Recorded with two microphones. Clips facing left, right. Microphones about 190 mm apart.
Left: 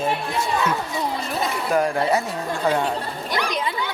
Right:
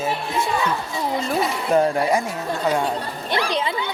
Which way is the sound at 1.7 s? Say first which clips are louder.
Right 3 dB; 25° right (ahead or behind).